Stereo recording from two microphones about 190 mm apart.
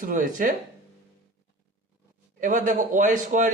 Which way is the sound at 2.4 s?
45° right (ahead or behind).